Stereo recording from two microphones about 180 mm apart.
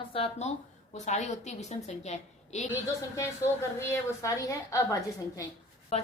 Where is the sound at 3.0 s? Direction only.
15° left (ahead or behind).